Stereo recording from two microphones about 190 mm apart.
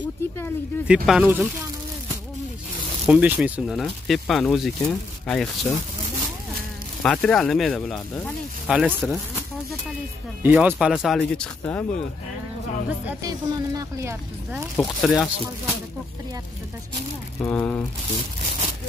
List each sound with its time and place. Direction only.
0.8 s speech: 5° right (ahead or behind)
7.0 s speech: 5° left (ahead or behind)
10.4 s speech: 10° right (ahead or behind); by 12.0 s 5° left (ahead or behind)
13.2 s speech: 20° right (ahead or behind)
14.8 s speech: centre (ahead or behind)
17.4 s speech: 10° left (ahead or behind)